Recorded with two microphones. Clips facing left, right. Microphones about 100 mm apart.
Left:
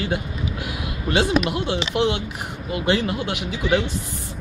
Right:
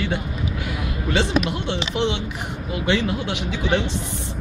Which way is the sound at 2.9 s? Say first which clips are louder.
Even; 45° left (ahead or behind).